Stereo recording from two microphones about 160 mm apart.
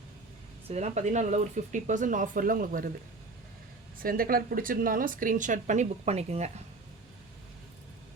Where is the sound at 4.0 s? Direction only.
65° right (ahead or behind); by 6.5 s 45° right (ahead or behind).